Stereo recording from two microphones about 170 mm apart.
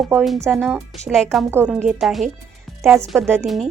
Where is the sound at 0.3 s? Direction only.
15° right (ahead or behind).